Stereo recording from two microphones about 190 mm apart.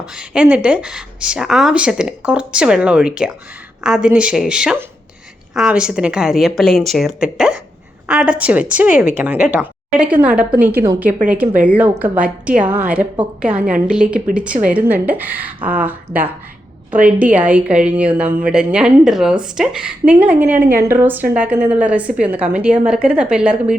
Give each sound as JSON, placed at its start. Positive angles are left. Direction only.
{"t": 0.0, "sound": "a woman's voice", "side_deg": -5}